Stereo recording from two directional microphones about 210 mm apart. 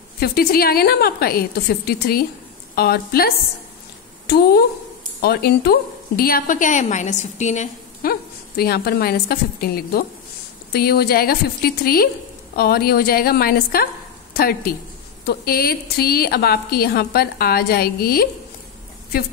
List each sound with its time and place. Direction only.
0.2 s a woman's voice: 45° left (ahead or behind)